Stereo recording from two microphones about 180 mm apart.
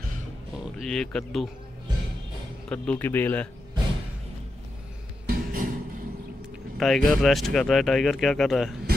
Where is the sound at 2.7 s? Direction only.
10° left (ahead or behind).